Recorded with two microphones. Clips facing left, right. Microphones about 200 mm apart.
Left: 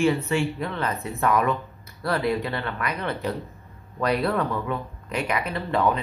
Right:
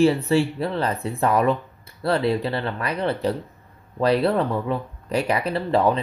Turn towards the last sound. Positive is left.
turn(degrees=-30)  # may be behind; listen again after turning